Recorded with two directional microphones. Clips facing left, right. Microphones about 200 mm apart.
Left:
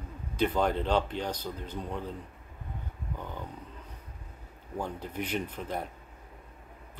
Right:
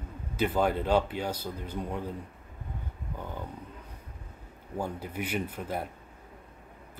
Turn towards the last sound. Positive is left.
turn(degrees=-10)  # may be behind; listen again after turning